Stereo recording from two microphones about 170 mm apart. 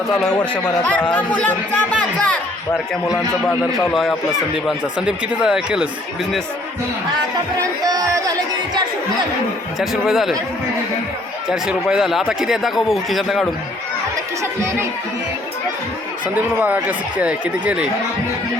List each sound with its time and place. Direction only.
0.1 s speech: 5° left (ahead or behind)
3.9 s speech: centre (ahead or behind)
7.6 s speech: 20° right (ahead or behind)
9.7 s speech: centre (ahead or behind)
11.4 s speech: 5° right (ahead or behind)
16.2 s speech: 10° right (ahead or behind)